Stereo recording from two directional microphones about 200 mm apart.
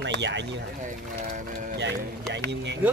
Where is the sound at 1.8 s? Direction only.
60° right (ahead or behind).